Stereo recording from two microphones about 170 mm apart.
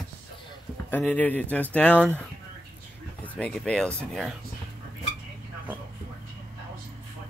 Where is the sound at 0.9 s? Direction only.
10° left (ahead or behind).